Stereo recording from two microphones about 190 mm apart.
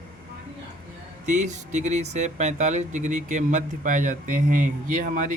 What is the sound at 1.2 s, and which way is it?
A man's voice, 40° right (ahead or behind).